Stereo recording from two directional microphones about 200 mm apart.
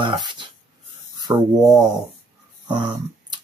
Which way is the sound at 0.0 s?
20° right (ahead or behind).